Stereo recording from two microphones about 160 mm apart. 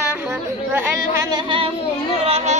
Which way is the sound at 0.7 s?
20° right (ahead or behind).